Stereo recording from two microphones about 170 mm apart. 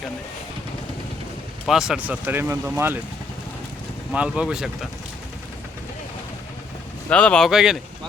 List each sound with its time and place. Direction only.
1.6 s speech: 5° right (ahead or behind)
4.1 s speech: 5° right (ahead or behind)
7.1 s speech: 5° left (ahead or behind)